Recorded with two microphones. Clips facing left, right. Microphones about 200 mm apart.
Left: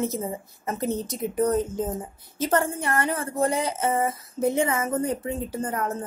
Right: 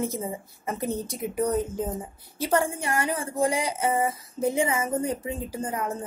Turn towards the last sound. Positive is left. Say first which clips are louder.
# left 2 dB
turn(degrees=-10)  # may be behind; listen again after turning